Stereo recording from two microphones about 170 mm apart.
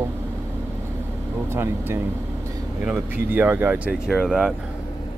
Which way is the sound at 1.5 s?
15° right (ahead or behind).